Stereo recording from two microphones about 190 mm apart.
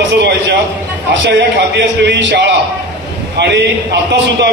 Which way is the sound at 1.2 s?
65° right (ahead or behind).